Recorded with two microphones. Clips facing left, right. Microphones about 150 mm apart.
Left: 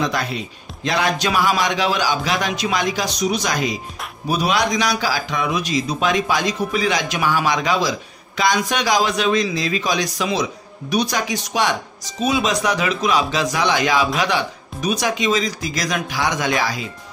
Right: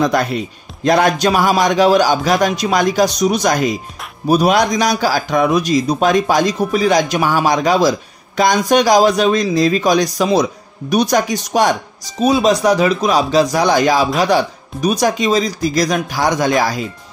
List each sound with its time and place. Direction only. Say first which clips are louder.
0.0 s a man's voice: right 7 dB; 50° right (ahead or behind)